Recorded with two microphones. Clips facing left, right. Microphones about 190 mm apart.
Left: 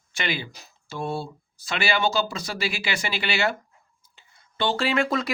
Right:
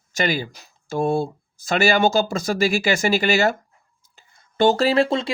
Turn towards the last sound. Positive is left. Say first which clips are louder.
# right 5 dB
turn(degrees=-30)  # may be behind; listen again after turning